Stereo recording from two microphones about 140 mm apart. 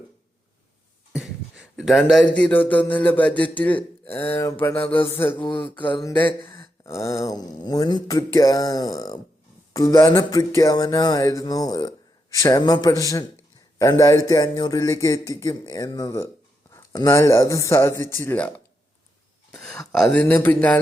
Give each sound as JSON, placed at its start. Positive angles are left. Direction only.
{"t": 1.1, "sound": "a sound", "side_deg": -5}
{"t": 2.3, "sound": "a man's voice", "side_deg": 10}
{"t": 5.3, "sound": "mantra", "side_deg": 35}
{"t": 6.1, "sound": "a man's voice", "side_deg": 15}
{"t": 6.6, "sound": "a sound", "side_deg": 20}
{"t": 19.9, "sound": "a man's voice", "side_deg": 5}